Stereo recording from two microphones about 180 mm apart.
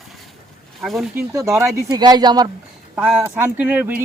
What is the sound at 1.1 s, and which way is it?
Speech, 15° right (ahead or behind).